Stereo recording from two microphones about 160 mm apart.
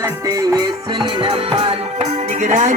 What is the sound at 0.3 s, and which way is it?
Music, 25° right (ahead or behind).